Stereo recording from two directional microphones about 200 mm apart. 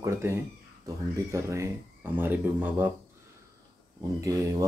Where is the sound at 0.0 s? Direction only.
15° right (ahead or behind).